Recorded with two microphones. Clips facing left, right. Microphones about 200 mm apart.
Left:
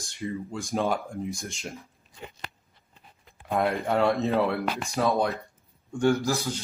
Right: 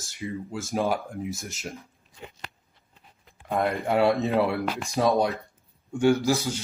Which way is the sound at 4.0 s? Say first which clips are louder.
Right 2 dB; 15° right (ahead or behind).